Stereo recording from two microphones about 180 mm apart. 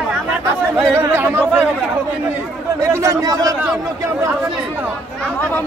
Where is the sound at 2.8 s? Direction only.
15° right (ahead or behind).